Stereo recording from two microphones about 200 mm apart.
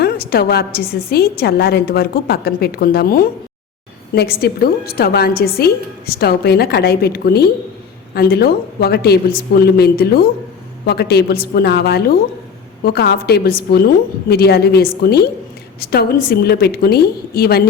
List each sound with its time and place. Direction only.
0.0 s a woman's voice: 50° left (ahead or behind)